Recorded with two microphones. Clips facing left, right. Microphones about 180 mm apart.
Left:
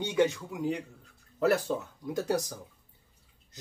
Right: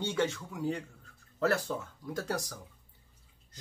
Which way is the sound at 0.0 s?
15° left (ahead or behind).